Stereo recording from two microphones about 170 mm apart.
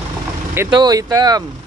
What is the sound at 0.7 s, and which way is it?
Speech, 25° right (ahead or behind).